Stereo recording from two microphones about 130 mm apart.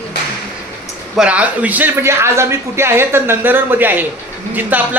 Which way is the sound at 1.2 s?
10° right (ahead or behind).